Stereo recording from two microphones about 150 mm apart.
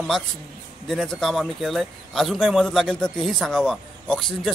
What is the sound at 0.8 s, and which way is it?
Speech, centre (ahead or behind).